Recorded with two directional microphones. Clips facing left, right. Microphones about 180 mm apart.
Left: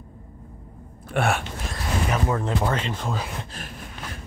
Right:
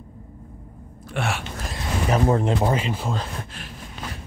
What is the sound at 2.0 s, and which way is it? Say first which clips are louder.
Speech: right 7 dB; 35° right (ahead or behind).